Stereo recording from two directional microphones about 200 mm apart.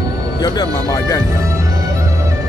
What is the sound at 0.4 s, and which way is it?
Speech, 20° left (ahead or behind).